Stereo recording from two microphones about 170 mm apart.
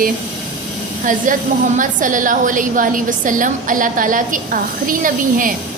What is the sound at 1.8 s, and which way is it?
A woman's voice, 50° right (ahead or behind).